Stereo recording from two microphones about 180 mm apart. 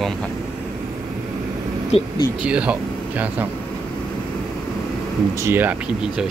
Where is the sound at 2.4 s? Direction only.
5° right (ahead or behind).